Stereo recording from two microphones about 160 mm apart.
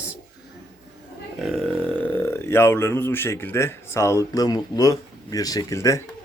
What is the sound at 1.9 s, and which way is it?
Speech, 10° left (ahead or behind).